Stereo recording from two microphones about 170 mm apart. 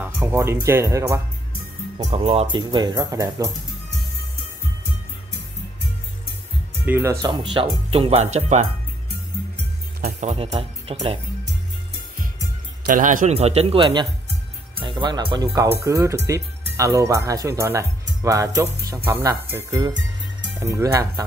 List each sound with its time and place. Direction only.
0.0 s speech: 15° right (ahead or behind)
2.0 s speech: 35° right (ahead or behind); by 3.4 s 20° right (ahead or behind)
6.9 s speech: 15° right (ahead or behind); by 8.5 s 40° right (ahead or behind)
10.3 s speech: 35° right (ahead or behind)
12.8 s speech: 55° right (ahead or behind); by 21.3 s 20° right (ahead or behind)